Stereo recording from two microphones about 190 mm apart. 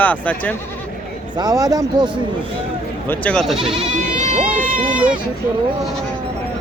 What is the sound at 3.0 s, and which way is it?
Speech, 5° left (ahead or behind).